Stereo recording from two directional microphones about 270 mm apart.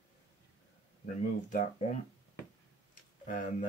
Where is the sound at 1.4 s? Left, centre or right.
Left.